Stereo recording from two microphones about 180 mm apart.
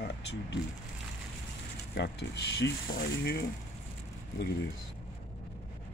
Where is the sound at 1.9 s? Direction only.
70° left (ahead or behind).